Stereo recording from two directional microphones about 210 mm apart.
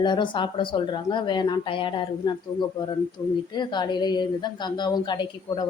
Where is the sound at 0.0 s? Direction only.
20° left (ahead or behind).